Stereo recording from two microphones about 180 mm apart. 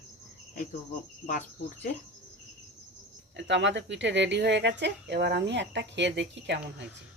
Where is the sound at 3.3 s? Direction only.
85° right.